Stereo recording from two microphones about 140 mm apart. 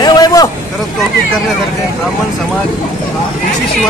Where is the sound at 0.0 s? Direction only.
30° left (ahead or behind).